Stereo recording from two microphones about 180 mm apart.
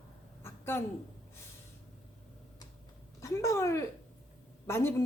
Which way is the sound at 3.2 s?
15° left (ahead or behind).